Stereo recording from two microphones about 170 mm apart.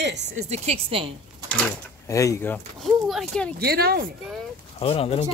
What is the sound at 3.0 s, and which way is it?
Speech, 5° left (ahead or behind).